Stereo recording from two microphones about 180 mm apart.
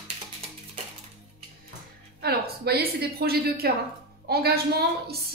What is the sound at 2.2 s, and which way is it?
A woman's voice, 60° right (ahead or behind).